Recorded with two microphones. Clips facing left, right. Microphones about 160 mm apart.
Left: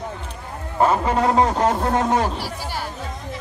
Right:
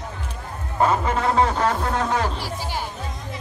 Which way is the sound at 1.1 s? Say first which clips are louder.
Left 2 dB; 15° left (ahead or behind).